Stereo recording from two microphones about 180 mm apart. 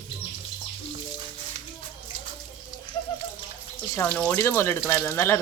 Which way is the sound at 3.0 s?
25° left (ahead or behind).